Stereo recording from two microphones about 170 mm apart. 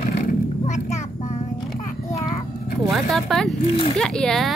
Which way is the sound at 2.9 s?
Centre (ahead or behind).